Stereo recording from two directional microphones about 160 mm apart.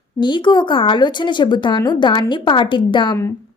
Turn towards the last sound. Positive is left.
turn(degrees=30)  # may be behind; listen again after turning